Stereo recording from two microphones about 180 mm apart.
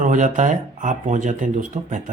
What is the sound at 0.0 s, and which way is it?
Speech, 45° right (ahead or behind).